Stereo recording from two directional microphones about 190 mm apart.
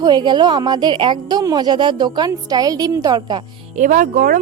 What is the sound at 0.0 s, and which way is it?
A woman's voice, 20° right (ahead or behind).